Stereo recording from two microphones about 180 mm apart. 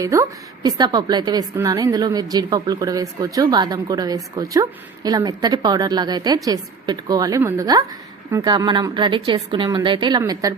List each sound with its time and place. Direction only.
0.0 s a woman's voice: 15° right (ahead or behind)